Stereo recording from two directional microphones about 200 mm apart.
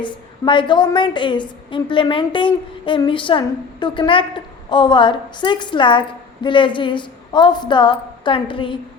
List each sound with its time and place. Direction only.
0.0 s a woman's voice: 25° left (ahead or behind)